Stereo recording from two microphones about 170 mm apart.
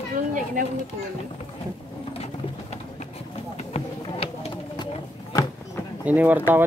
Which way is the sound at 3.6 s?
35° left (ahead or behind).